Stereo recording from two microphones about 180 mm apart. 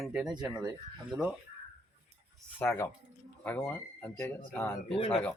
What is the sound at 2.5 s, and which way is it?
Speech, 10° left (ahead or behind).